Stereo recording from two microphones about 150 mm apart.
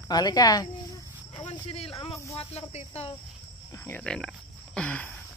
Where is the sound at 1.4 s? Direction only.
40° left (ahead or behind).